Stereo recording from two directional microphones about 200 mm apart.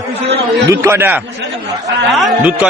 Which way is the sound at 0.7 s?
10° right (ahead or behind).